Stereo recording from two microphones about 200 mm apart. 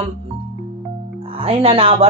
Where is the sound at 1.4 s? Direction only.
30° right (ahead or behind).